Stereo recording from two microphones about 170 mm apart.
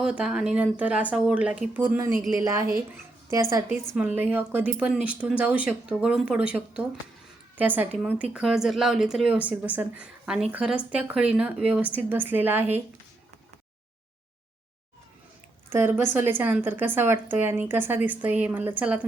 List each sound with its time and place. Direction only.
0.0 s a woman's voice: 5° right (ahead or behind)
3.7 s a woman's voice: 10° right (ahead or behind)
15.7 s a woman's voice: 15° right (ahead or behind)